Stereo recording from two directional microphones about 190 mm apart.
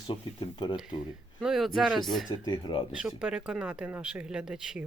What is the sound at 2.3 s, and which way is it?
Speech, 20° left (ahead or behind).